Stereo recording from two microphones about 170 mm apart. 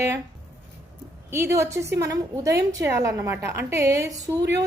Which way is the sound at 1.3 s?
15° right (ahead or behind).